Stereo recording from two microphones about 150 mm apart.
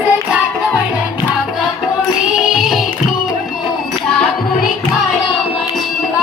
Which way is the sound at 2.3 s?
Centre (ahead or behind).